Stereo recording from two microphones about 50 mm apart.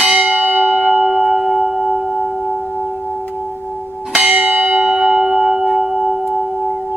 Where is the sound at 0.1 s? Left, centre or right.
Right; by 2.0 s centre.